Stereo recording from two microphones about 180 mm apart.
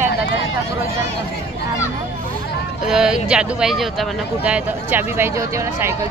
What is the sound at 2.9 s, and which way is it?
Speech, 5° right (ahead or behind).